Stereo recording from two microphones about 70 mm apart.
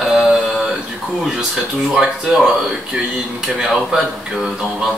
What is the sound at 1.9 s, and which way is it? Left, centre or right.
Speech, centre.